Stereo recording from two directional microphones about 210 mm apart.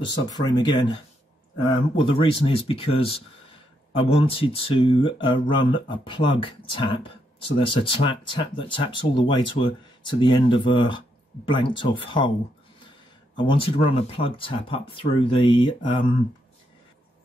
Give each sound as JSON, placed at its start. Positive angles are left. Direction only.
{"t": 0.0, "sound": "speech", "side_deg": 20}
{"t": 2.0, "sound": "speech", "side_deg": 25}
{"t": 13.4, "sound": "speech", "side_deg": 25}